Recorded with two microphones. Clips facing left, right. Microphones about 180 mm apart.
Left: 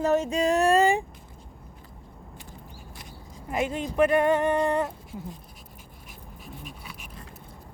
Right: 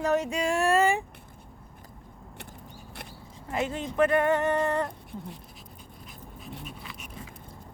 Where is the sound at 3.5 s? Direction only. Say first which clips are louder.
Left 2 dB; 15° left (ahead or behind).